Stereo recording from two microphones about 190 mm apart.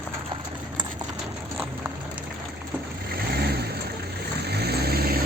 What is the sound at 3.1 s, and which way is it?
Vehicle, 55° right (ahead or behind).